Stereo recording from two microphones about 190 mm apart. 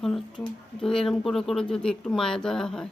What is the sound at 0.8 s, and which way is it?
Speech, centre (ahead or behind).